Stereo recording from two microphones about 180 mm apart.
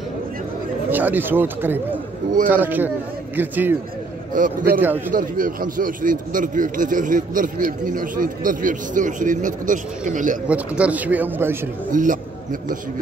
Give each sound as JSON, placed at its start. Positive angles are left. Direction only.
{"t": 0.8, "sound": "speech", "side_deg": -10}
{"t": 4.3, "sound": "speech", "side_deg": -50}
{"t": 10.5, "sound": "speech", "side_deg": -10}
{"t": 11.9, "sound": "speech", "side_deg": -45}